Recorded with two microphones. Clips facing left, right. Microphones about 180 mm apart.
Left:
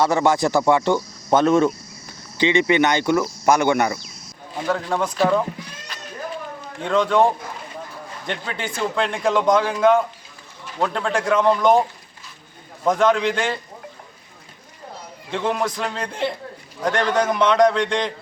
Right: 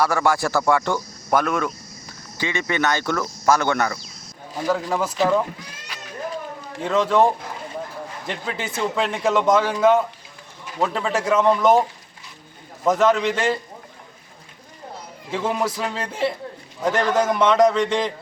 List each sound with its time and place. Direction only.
0.0 s speech: 20° left (ahead or behind)
4.6 s a man's voice: 5° right (ahead or behind)
6.8 s a man's voice: 5° right (ahead or behind)
8.3 s a man's voice: centre (ahead or behind)
15.3 s a man's voice: 5° right (ahead or behind)